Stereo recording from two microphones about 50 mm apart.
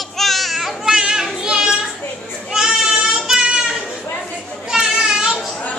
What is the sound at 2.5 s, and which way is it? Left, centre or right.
Child singing, centre.